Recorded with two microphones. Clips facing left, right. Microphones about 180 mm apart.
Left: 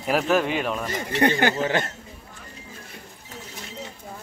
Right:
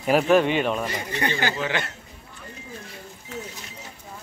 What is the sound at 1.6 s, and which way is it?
Speech, 45° left (ahead or behind).